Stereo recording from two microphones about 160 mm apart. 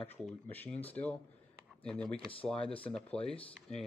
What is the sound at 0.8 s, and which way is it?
A man's voice, 10° left (ahead or behind).